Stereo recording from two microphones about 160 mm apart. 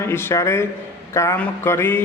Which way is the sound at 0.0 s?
15° left (ahead or behind).